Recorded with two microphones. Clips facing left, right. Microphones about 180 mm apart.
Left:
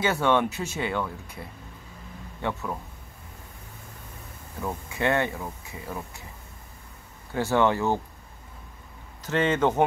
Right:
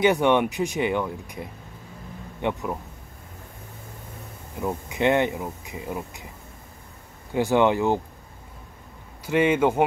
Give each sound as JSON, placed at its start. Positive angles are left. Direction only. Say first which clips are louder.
{"t": 0.0, "sound": "speech", "louder": "right 4 dB", "side_deg": -15}
{"t": 4.6, "sound": "speech", "louder": "right 4 dB", "side_deg": -15}
{"t": 7.3, "sound": "speech", "louder": "right 3 dB", "side_deg": -15}
{"t": 9.2, "sound": "speech", "louder": "right 3 dB", "side_deg": -10}